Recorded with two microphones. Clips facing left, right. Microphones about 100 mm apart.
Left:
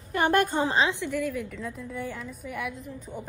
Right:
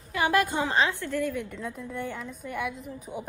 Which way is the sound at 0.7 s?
25° left (ahead or behind).